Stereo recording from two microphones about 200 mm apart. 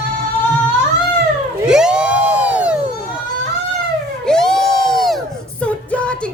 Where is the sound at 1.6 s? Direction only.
5° right (ahead or behind).